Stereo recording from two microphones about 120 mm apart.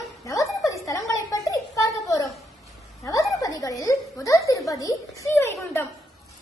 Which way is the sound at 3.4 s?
30° left (ahead or behind).